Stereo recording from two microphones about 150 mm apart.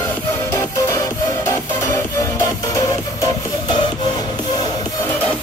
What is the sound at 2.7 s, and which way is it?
Music, 25° left (ahead or behind).